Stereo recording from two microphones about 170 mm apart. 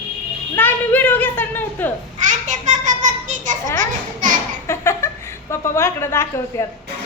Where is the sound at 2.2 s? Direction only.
45° right (ahead or behind).